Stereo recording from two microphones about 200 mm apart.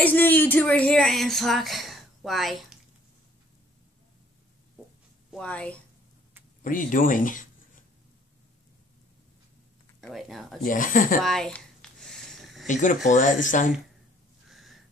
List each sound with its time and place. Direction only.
0.0 s speech: 10° left (ahead or behind)
5.3 s speech: 5° left (ahead or behind)
6.6 s speech: 40° left (ahead or behind)
9.9 s speech: centre (ahead or behind)
10.6 s speech: 40° left (ahead or behind)
11.2 s a sound: centre (ahead or behind)
12.6 s speech: 40° left (ahead or behind)
14.5 s a sound: centre (ahead or behind)